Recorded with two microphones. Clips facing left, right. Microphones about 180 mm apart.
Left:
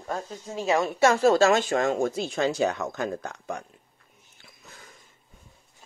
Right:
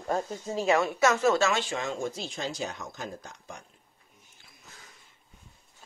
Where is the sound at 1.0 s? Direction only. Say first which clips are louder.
Left 4 dB; 30° left (ahead or behind); by 3.6 s 65° left (ahead or behind).